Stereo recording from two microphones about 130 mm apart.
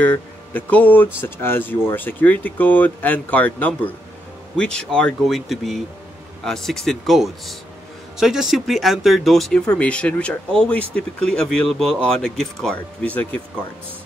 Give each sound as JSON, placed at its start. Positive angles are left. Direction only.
{"t": 0.0, "sound": "speech", "side_deg": 10}